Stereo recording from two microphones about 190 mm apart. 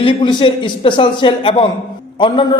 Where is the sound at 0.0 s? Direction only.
25° left (ahead or behind).